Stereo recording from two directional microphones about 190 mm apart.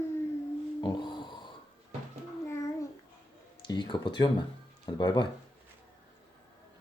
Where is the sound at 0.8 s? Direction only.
20° left (ahead or behind).